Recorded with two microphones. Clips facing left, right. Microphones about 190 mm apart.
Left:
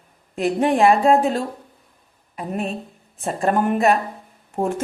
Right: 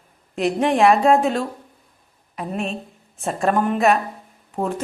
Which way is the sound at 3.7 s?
30° left (ahead or behind).